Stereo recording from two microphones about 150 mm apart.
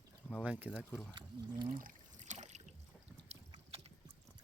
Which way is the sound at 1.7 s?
60° right (ahead or behind).